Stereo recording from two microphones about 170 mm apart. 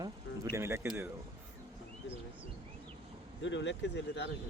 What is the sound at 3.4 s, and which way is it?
Speech, 90° left.